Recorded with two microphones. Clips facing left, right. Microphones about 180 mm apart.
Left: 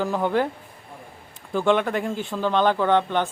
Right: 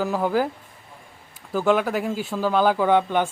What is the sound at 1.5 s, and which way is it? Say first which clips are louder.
Speech: even; 5° right (ahead or behind).